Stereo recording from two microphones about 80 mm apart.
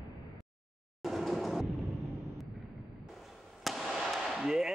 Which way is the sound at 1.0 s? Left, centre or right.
Centre.